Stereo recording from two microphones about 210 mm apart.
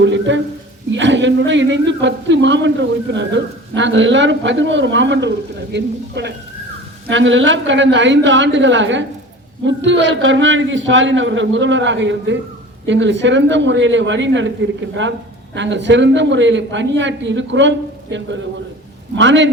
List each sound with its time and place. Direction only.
0.0 s a man's voice: 60° right (ahead or behind)
15.5 s a man's voice: 60° right (ahead or behind)